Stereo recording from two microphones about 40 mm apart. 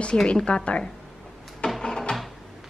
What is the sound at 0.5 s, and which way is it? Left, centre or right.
Speech, left.